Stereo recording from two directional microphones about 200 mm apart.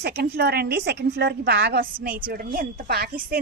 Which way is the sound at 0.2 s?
55° right (ahead or behind).